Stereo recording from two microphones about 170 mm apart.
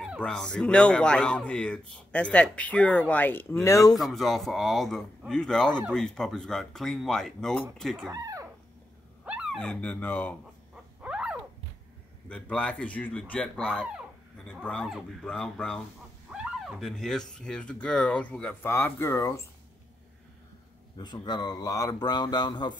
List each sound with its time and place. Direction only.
0.2 s speech: 5° left (ahead or behind)
4.0 s speech: centre (ahead or behind)
8.1 s a sound: 20° right (ahead or behind)
9.2 s a sound: 5° right (ahead or behind)
9.6 s speech: 5° left (ahead or behind)
11.0 s dog: 5° right (ahead or behind)
12.3 s speech: 5° left (ahead or behind)
21.0 s speech: 25° left (ahead or behind)